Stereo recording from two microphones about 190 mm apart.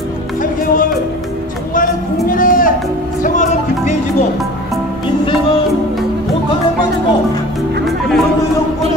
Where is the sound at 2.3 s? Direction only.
45° left (ahead or behind).